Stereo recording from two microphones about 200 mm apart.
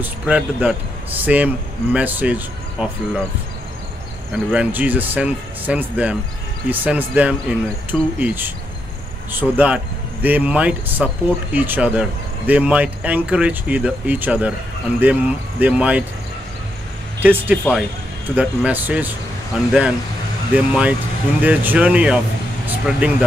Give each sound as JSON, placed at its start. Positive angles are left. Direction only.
{"t": 0.0, "sound": "speech", "side_deg": -5}
{"t": 4.3, "sound": "speech", "side_deg": -5}
{"t": 17.2, "sound": "speech", "side_deg": -10}
{"t": 20.5, "sound": "speech", "side_deg": -5}